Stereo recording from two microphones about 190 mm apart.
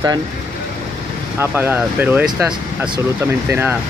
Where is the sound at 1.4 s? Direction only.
10° right (ahead or behind).